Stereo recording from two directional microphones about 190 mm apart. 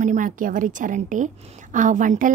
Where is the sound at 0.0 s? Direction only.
40° right (ahead or behind).